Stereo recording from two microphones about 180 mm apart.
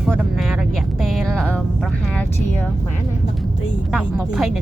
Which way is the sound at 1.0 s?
Centre (ahead or behind).